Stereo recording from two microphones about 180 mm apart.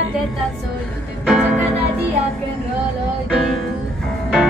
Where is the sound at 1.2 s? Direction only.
5° right (ahead or behind).